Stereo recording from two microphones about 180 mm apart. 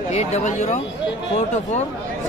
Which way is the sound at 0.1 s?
35° left (ahead or behind).